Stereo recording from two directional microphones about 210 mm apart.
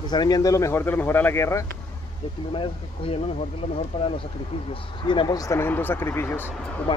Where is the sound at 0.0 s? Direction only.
20° left (ahead or behind).